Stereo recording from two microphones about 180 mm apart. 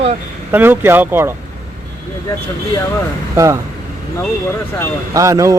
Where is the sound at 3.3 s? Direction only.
15° right (ahead or behind).